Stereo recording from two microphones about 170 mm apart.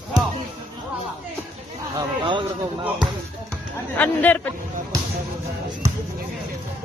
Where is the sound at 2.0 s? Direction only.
30° right (ahead or behind).